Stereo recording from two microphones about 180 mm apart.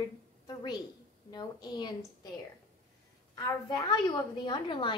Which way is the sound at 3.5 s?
20° left (ahead or behind).